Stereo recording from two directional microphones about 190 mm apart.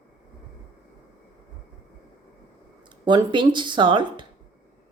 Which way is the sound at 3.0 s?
25° right (ahead or behind).